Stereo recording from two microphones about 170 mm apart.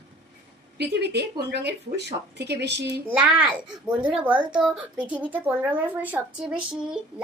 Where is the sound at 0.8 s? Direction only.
80° right.